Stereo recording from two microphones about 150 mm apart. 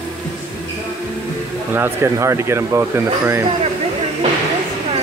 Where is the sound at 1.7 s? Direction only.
15° right (ahead or behind).